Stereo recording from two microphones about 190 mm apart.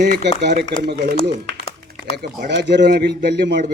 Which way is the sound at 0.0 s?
60° right (ahead or behind).